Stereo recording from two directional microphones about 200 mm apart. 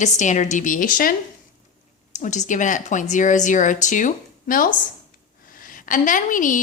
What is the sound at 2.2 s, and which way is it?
A woman's voice, 40° left (ahead or behind).